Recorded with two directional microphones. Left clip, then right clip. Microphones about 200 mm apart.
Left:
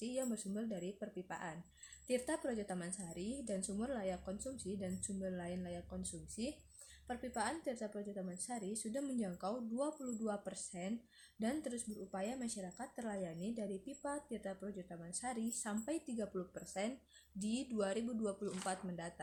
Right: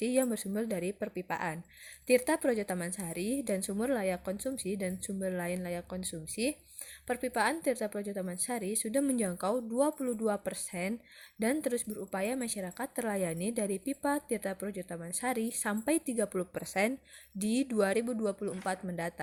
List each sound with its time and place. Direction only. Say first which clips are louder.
0.0 s speech: right 12 dB; 35° right (ahead or behind)